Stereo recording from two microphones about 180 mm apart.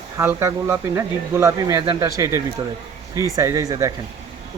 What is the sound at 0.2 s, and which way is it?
Speech, 15° right (ahead or behind).